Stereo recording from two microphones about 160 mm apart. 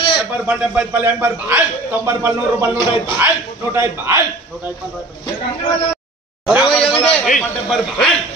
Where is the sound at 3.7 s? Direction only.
15° right (ahead or behind).